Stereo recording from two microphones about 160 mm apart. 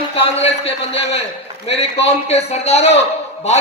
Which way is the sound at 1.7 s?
40° left (ahead or behind).